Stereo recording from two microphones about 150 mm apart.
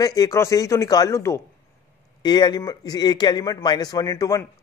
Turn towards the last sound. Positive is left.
turn(degrees=20)  # may be behind; listen again after turning